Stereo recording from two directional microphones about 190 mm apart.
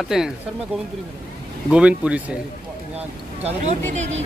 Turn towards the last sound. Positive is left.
turn(degrees=-35)  # may be behind; listen again after turning